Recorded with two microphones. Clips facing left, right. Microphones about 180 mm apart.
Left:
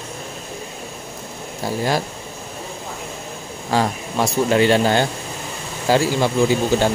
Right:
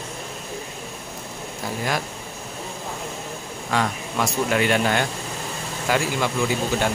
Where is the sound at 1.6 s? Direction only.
30° left (ahead or behind).